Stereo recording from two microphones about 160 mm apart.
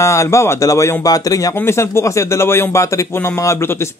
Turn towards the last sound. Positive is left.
turn(degrees=15)  # may be behind; listen again after turning